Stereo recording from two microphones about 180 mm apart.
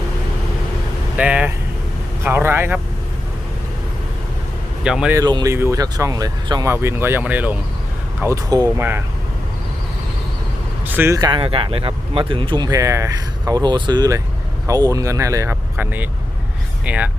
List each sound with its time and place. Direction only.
1.1 s speech: 5° right (ahead or behind)
4.8 s speech: 5° right (ahead or behind)
5.1 s speech: 20° right (ahead or behind)
10.8 s speech: 10° right (ahead or behind)